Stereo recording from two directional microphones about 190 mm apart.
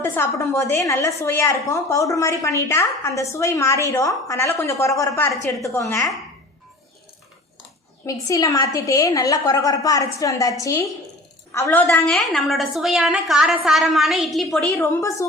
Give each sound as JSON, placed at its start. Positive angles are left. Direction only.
{"t": 0.0, "sound": "a woman's voice", "side_deg": 15}
{"t": 8.0, "sound": "a woman's voice", "side_deg": 15}
{"t": 14.7, "sound": "a woman's voice", "side_deg": 15}